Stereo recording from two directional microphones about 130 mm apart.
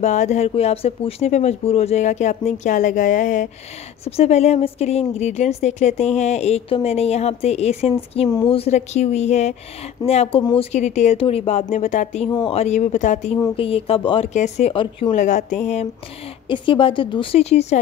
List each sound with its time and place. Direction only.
0.0 s a woman's voice: 65° left (ahead or behind)
4.0 s a woman's voice: 55° left (ahead or behind)
10.4 s speech: 40° left (ahead or behind)
10.7 s a woman's voice: 65° left (ahead or behind)
11.1 s a woman's voice: 50° left (ahead or behind); by 12.3 s 65° left (ahead or behind)
12.4 s a woman's voice: 55° left (ahead or behind)
13.6 s speech: 45° left (ahead or behind)
14.3 s a woman's voice: 65° left (ahead or behind)
14.7 s speech: 40° left (ahead or behind)
15.1 s a woman's voice: 70° left (ahead or behind)
16.4 s speech: 40° left (ahead or behind)